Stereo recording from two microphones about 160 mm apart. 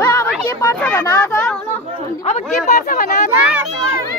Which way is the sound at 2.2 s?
45° left (ahead or behind).